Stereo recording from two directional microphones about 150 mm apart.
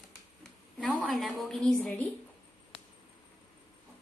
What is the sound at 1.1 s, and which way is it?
Speech, centre (ahead or behind).